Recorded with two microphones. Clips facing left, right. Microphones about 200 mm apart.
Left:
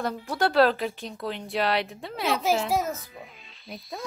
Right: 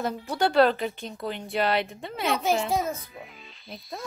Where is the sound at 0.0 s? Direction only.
Centre (ahead or behind).